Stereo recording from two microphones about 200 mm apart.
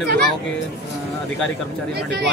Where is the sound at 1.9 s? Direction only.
55° right (ahead or behind).